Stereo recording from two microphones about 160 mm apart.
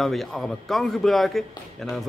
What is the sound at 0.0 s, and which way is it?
A man's voice, centre (ahead or behind).